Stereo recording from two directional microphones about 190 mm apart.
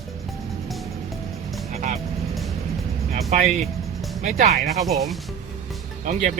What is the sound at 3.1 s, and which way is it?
Speech, 40° right (ahead or behind).